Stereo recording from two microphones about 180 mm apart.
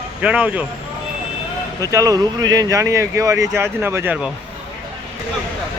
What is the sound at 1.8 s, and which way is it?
Speech, 20° right (ahead or behind).